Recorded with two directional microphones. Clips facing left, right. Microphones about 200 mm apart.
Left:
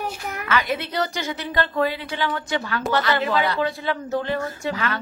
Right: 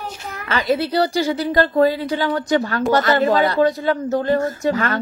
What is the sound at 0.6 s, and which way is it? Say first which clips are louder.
A woman's voice: right 8 dB; 35° right (ahead or behind).